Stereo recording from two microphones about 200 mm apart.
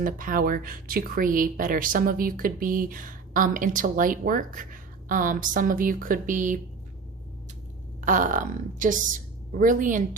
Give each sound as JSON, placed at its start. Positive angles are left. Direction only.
{"t": 0.0, "sound": "speech", "side_deg": -45}
{"t": 8.0, "sound": "a woman's voice", "side_deg": -40}